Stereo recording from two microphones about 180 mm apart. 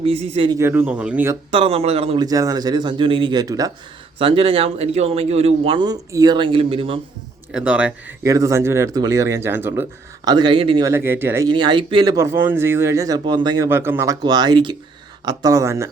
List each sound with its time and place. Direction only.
0.0 s a man's voice: 35° right (ahead or behind)
0.6 s speech: 10° right (ahead or behind)
1.5 s a man's voice: 30° right (ahead or behind)
2.2 s speech: 20° right (ahead or behind)
4.2 s a man's voice: 30° right (ahead or behind)
7.5 s speech: 5° right (ahead or behind)
8.2 s speech: 15° right (ahead or behind)
10.2 s speech: 25° right (ahead or behind)
10.8 s speech: 15° right (ahead or behind)
11.5 s speech: 25° right (ahead or behind)
12.1 s speech: 15° right (ahead or behind)
13.7 s speech: 10° right (ahead or behind)